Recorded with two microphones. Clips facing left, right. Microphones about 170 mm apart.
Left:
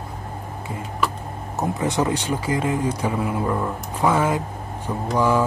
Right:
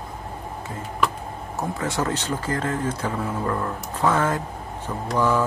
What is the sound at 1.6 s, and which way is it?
Speech, 20° left (ahead or behind).